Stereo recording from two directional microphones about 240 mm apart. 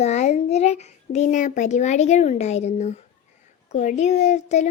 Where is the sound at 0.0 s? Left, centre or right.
Left.